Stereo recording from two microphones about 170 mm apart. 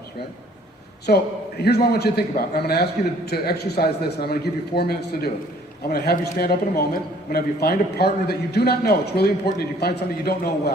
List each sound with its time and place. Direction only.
1.0 s a man's voice: 70° left (ahead or behind)